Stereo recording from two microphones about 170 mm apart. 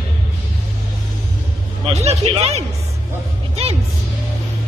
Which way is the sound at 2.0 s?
35° right (ahead or behind).